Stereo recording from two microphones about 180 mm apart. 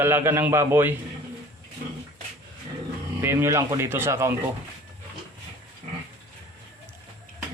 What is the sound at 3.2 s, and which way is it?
A man's voice, 15° right (ahead or behind).